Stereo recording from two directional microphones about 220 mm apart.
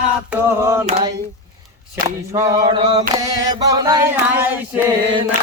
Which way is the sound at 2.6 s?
25° right (ahead or behind).